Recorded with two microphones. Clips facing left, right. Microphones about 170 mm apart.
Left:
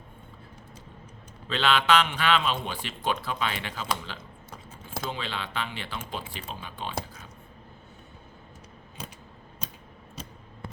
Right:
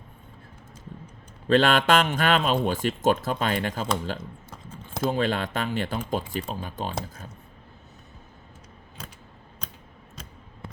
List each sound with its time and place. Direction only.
1.5 s speech: 50° right (ahead or behind)